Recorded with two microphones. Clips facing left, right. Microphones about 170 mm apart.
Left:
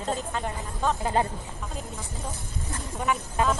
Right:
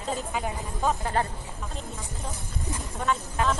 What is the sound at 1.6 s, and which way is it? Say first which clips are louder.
Speech: even; centre (ahead or behind).